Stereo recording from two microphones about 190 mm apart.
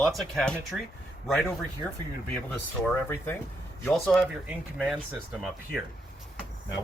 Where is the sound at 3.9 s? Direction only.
5° left (ahead or behind).